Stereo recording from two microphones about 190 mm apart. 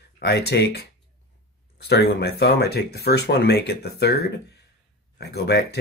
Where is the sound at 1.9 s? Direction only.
60° left (ahead or behind).